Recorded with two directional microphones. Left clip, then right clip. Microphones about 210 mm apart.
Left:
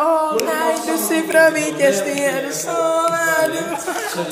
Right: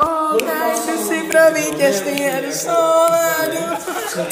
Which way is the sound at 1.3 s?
10° left (ahead or behind).